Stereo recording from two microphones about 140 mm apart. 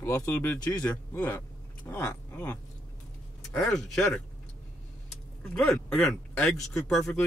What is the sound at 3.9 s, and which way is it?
Speech, 5° left (ahead or behind).